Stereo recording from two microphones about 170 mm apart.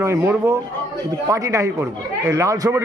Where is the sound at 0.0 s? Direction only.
15° right (ahead or behind).